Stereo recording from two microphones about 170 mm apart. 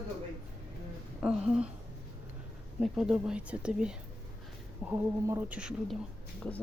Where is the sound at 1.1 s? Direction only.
5° right (ahead or behind).